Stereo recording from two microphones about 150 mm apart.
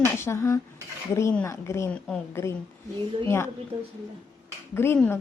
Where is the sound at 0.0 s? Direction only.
15° left (ahead or behind).